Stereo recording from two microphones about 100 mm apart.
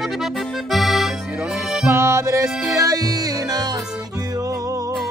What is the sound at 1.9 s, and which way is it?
Music, 25° right (ahead or behind).